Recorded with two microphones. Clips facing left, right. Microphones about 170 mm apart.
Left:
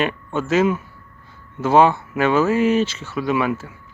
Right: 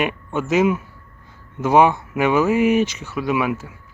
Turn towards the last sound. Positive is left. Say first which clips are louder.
# even
turn(degrees=-10)  # may be behind; listen again after turning